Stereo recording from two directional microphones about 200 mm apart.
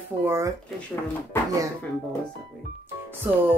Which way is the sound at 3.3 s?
5° right (ahead or behind).